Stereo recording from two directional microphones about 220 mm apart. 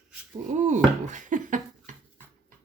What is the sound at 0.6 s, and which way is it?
Speech, 35° right (ahead or behind).